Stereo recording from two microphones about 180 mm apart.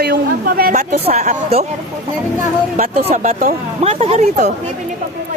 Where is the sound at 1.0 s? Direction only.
40° right (ahead or behind).